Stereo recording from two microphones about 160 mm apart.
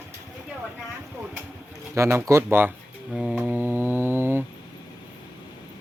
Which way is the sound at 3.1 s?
5° right (ahead or behind).